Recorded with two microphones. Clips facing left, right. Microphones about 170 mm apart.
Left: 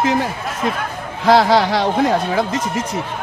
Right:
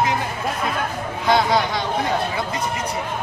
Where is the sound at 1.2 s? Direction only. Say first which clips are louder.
Left 6 dB; 90° left.